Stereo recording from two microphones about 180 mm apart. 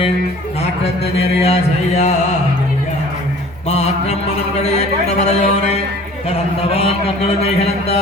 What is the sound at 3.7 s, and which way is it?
Music, 35° left (ahead or behind).